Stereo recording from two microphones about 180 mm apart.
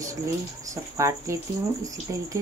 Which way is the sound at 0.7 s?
15° right (ahead or behind).